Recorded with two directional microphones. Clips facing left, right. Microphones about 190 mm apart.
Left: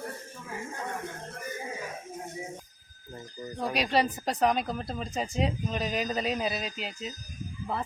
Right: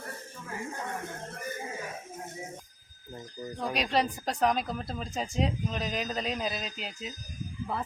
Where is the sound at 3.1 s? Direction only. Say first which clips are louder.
Left 1 dB; centre (ahead or behind).